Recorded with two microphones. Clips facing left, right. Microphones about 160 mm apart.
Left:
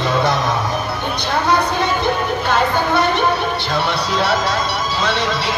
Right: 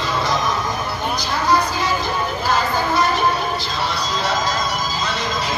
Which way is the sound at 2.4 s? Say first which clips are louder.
Left 2 dB; 65° left (ahead or behind).